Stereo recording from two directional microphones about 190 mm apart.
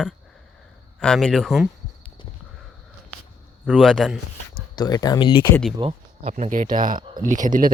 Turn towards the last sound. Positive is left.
turn(degrees=-45)  # may be behind; listen again after turning